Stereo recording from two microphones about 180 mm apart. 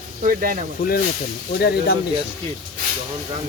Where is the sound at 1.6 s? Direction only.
65° left (ahead or behind).